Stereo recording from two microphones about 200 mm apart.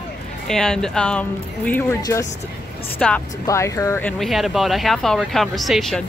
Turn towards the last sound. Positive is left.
turn(degrees=0)  # may be behind; listen again after turning